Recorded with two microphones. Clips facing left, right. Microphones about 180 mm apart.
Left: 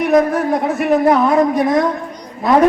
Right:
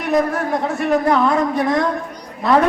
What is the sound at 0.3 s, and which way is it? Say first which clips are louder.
A man's voice: left 4 dB; 20° left (ahead or behind).